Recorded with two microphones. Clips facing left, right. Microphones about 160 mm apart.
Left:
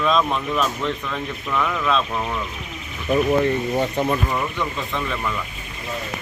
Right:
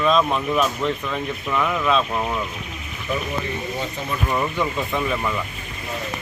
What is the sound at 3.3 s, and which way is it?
Speech, 60° left (ahead or behind).